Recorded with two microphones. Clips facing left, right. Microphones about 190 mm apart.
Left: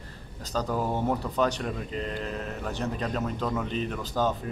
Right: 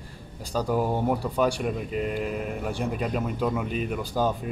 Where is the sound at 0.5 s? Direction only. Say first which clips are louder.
Right 3 dB; 10° right (ahead or behind).